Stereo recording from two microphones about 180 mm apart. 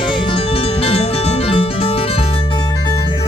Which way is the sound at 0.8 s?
35° left (ahead or behind).